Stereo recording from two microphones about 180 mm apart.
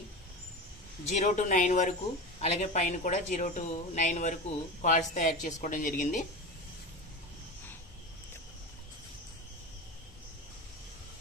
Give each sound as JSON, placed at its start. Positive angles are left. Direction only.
{"t": 1.1, "sound": "speech", "side_deg": 40}